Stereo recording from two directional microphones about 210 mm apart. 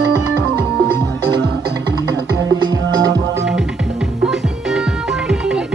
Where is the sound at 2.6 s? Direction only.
20° right (ahead or behind).